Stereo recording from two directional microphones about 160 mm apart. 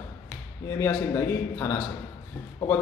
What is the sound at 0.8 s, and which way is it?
A man's voice, 15° left (ahead or behind).